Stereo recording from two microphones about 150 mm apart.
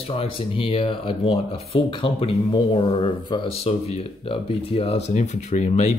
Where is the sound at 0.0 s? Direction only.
40° left (ahead or behind).